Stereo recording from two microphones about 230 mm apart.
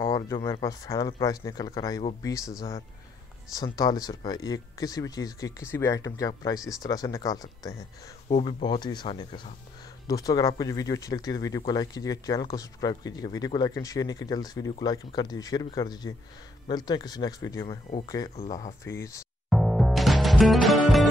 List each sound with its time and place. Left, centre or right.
0.0 s speech: centre
3.5 s speech: centre
8.4 s speech: left
8.6 s speech: centre
19.5 s music: centre